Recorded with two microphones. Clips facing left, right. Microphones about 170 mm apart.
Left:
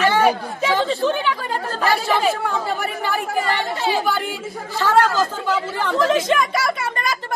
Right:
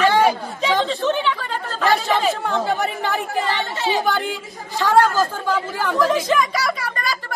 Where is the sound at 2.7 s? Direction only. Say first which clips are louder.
Right 1 dB; 20° right (ahead or behind).